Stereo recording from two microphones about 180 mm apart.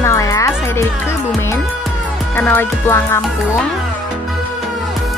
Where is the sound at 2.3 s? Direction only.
10° left (ahead or behind).